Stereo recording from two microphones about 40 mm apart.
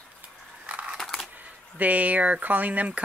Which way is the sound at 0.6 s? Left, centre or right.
Right.